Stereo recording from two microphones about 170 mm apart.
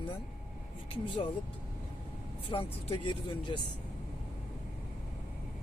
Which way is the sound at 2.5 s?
30° left (ahead or behind).